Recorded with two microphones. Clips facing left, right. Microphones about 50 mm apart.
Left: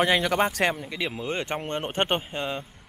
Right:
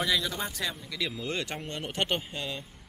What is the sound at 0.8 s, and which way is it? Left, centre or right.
Speech, left.